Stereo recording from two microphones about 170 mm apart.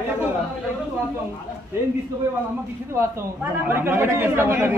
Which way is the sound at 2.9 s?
15° right (ahead or behind).